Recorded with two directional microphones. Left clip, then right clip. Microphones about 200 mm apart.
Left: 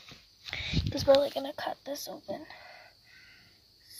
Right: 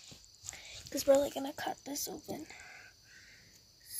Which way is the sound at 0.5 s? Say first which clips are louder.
Left 13 dB; 35° left (ahead or behind).